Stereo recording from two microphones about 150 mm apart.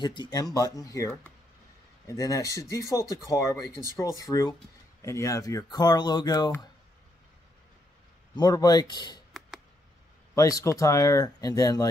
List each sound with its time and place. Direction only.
0.0 s speech: 30° left (ahead or behind)
8.4 s speech: 25° left (ahead or behind)
10.3 s speech: 20° left (ahead or behind)